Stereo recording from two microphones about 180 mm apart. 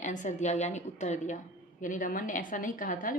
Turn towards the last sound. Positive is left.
turn(degrees=50)  # may be behind; listen again after turning